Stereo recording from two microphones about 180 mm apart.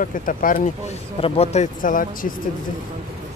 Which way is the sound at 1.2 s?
35° left (ahead or behind).